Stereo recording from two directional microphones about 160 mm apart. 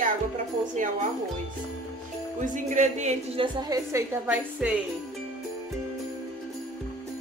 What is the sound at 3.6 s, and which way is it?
A woman's voice, 20° right (ahead or behind).